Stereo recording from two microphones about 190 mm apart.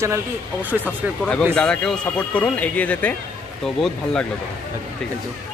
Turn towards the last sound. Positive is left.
turn(degrees=0)  # may be behind; listen again after turning